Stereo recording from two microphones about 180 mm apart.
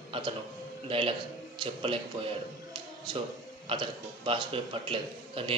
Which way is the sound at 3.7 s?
30° right (ahead or behind).